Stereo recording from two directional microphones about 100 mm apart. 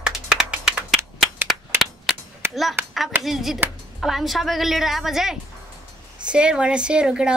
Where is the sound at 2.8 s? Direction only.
20° right (ahead or behind).